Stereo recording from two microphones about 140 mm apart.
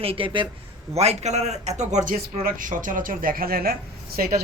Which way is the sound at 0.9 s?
50° right (ahead or behind).